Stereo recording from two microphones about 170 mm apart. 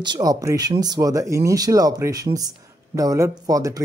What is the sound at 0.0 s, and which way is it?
Speech, 25° right (ahead or behind).